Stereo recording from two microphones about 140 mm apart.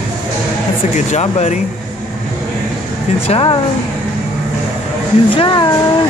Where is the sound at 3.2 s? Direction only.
40° left (ahead or behind).